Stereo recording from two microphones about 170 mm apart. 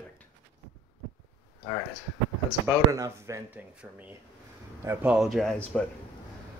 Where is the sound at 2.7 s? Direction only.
20° right (ahead or behind).